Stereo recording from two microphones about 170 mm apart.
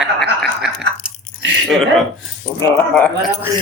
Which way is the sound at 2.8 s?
10° left (ahead or behind).